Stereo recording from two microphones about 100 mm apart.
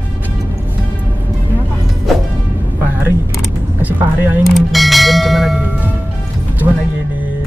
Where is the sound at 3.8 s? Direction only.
15° right (ahead or behind).